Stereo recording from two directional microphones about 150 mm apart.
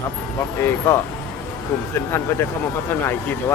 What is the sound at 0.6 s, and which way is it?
Speech, 15° left (ahead or behind).